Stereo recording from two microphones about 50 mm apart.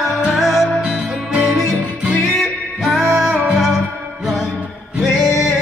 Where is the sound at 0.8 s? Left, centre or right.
Right.